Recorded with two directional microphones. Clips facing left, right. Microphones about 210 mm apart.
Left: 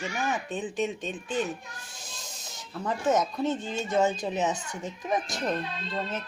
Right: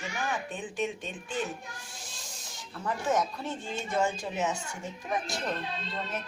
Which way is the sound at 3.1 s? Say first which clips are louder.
Left 5 dB; 20° left (ahead or behind).